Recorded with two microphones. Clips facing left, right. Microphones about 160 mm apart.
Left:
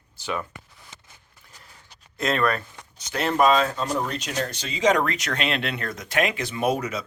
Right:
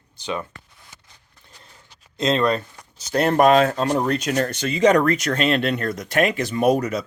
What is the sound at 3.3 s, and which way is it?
Speech, 60° right (ahead or behind).